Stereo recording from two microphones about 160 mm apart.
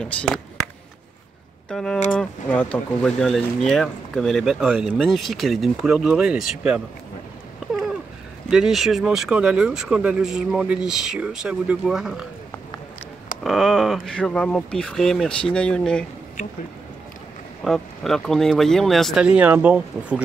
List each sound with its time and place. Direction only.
0.0 s speech: 5° left (ahead or behind)
1.7 s speech: 5° left (ahead or behind)
7.6 s a sound: centre (ahead or behind)
8.5 s speech: 5° right (ahead or behind)
13.4 s speech: centre (ahead or behind)
17.6 s speech: centre (ahead or behind)